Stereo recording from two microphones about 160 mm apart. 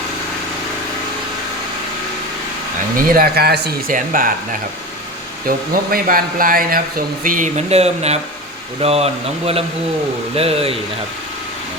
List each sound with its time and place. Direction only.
3.2 s speech: 75° right (ahead or behind)
3.9 s speech: 60° right (ahead or behind)
5.5 s speech: 65° right (ahead or behind); by 10.8 s 40° right (ahead or behind)